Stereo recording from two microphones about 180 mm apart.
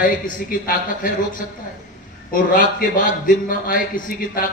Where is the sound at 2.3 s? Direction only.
50° left (ahead or behind).